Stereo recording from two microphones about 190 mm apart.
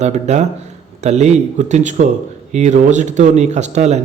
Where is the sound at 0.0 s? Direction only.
35° right (ahead or behind).